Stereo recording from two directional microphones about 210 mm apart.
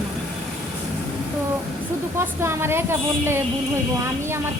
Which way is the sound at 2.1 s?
10° right (ahead or behind).